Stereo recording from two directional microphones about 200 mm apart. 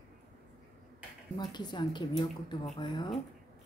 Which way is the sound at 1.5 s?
20° left (ahead or behind).